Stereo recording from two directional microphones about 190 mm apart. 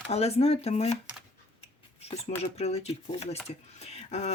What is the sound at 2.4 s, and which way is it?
Speech, 35° left (ahead or behind).